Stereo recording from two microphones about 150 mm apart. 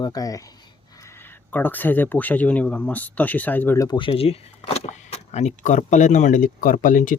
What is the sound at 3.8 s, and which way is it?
Speech, 35° left (ahead or behind).